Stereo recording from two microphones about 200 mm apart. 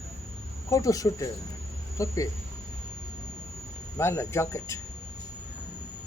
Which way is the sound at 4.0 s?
15° left (ahead or behind).